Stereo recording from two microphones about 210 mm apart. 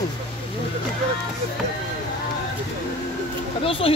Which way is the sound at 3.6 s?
25° left (ahead or behind).